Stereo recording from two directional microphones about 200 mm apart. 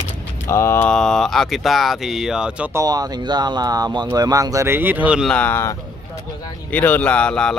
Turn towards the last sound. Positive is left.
turn(degrees=5)  # may be behind; listen again after turning